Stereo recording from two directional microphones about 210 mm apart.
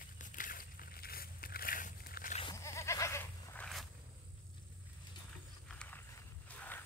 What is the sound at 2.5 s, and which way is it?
Goat, 15° left (ahead or behind).